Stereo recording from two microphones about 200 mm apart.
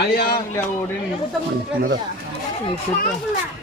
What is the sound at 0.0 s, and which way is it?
Speech, 50° left (ahead or behind).